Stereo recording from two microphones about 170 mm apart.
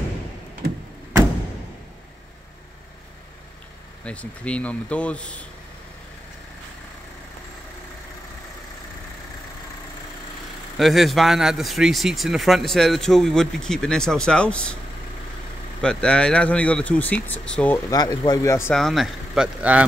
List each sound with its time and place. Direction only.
4.0 s speech: 5° left (ahead or behind)
10.8 s speech: centre (ahead or behind)
15.8 s speech: 5° left (ahead or behind)
17.8 s speech: 25° left (ahead or behind)
18.7 s speech: centre (ahead or behind)